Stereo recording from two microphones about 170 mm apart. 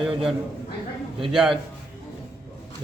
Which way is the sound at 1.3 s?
5° right (ahead or behind).